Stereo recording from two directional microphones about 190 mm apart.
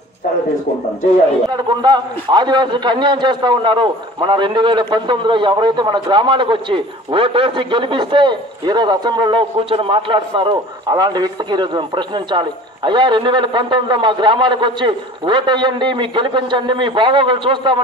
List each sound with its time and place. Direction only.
1.5 s a man's voice: 25° right (ahead or behind)